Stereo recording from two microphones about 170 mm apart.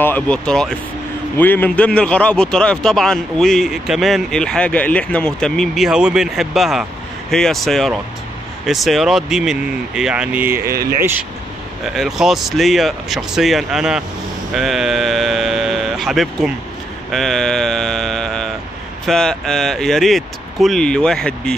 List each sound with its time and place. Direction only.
0.0 s a man's voice: 10° left (ahead or behind); by 10.7 s 10° right (ahead or behind)
10.7 s speech: 65° right (ahead or behind)
11.0 s speech: 10° right (ahead or behind)
11.8 s a man's voice: centre (ahead or behind)
17.1 s mantra: centre (ahead or behind)
19.0 s a man's voice: centre (ahead or behind)